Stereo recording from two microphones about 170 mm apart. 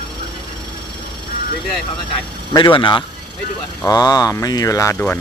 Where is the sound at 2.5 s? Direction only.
25° left (ahead or behind).